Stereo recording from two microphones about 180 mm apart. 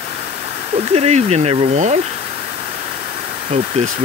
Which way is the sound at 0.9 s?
35° right (ahead or behind).